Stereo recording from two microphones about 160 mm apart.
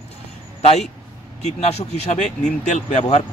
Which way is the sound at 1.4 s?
45° left (ahead or behind).